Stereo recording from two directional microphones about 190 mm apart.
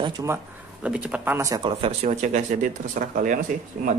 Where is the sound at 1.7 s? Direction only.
30° right (ahead or behind).